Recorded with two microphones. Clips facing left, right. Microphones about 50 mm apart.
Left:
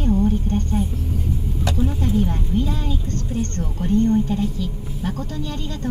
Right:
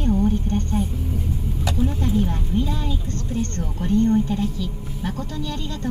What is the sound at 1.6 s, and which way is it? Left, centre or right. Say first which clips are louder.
Speech: left 1 dB; centre.